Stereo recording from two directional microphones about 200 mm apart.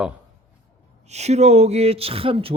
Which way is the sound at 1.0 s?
35° right (ahead or behind).